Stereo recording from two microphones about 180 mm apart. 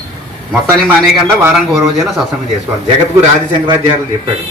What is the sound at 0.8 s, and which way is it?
Speech, 10° right (ahead or behind).